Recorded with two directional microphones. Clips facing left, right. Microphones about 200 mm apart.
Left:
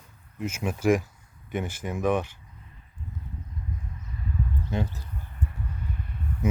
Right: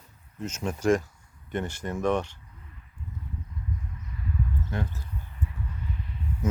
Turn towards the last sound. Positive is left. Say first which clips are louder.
# left 1 dB
turn(degrees=50)  # may be behind; listen again after turning